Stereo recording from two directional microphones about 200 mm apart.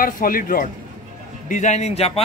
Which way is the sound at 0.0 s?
45° left (ahead or behind).